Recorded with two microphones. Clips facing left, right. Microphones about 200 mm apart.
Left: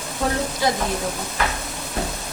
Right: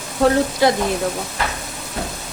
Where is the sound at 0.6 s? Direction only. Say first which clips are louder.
Right 6 dB; 70° right (ahead or behind).